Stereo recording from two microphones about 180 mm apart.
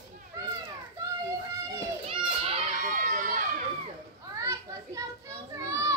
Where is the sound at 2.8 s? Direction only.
45° right (ahead or behind).